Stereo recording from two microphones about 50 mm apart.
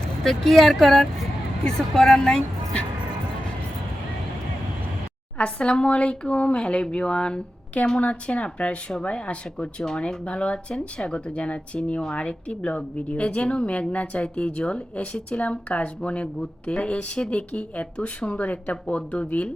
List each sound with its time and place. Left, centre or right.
0.3 s a woman's voice: centre
5.4 s speech: left